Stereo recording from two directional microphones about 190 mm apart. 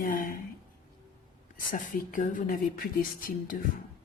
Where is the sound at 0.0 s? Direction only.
45° left (ahead or behind).